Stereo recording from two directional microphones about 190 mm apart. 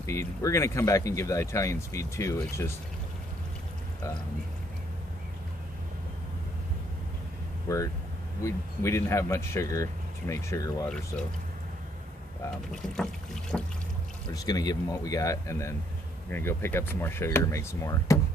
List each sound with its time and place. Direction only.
0.0 s speech: 15° left (ahead or behind)
7.6 s speech: 15° left (ahead or behind)
12.9 s boat: 5° left (ahead or behind)
14.3 s speech: 20° left (ahead or behind)